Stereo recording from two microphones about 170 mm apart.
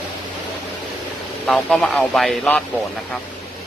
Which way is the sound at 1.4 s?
Centre (ahead or behind).